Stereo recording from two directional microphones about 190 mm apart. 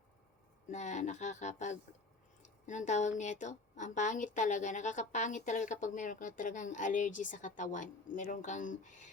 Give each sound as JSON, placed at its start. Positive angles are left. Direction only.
{"t": 0.7, "sound": "a woman's voice", "side_deg": 40}